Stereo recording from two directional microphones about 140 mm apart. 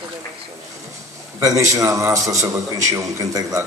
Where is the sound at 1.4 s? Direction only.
25° right (ahead or behind).